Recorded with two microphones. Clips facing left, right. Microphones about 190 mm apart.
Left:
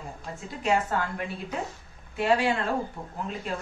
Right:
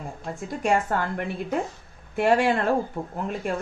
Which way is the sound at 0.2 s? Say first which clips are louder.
Right 6 dB; 50° right (ahead or behind).